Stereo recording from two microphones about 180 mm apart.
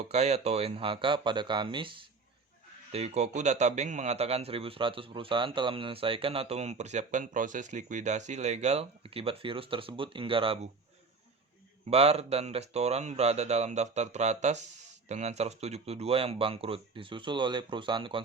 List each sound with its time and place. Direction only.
0.1 s a man's voice: 35° right (ahead or behind)
11.9 s a man's voice: 35° right (ahead or behind)